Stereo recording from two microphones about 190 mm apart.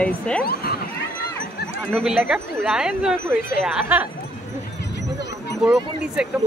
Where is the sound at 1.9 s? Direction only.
5° right (ahead or behind).